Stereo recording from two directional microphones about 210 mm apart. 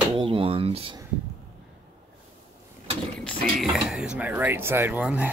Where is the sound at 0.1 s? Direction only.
25° right (ahead or behind).